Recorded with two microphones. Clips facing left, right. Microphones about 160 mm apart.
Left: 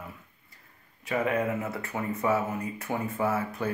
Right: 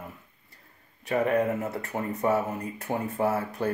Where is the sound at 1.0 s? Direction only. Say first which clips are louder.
Right 3 dB; 40° right (ahead or behind).